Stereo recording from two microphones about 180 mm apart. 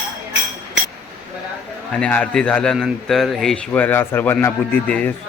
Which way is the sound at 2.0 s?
5° left (ahead or behind).